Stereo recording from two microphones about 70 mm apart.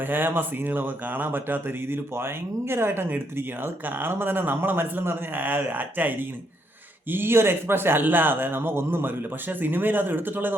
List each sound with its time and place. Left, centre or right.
0.0 s speech: right